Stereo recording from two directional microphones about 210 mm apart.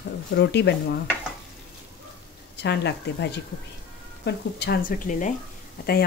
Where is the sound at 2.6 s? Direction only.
55° left (ahead or behind).